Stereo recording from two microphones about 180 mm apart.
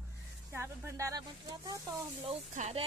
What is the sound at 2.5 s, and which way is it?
Speech, 35° right (ahead or behind).